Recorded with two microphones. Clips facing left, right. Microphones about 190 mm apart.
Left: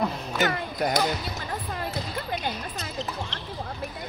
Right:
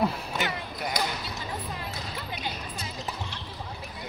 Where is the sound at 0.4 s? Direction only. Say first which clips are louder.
Left 8 dB; 45° left (ahead or behind).